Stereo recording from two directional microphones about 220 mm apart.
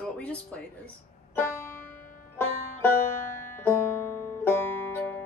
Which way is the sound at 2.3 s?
10° left (ahead or behind).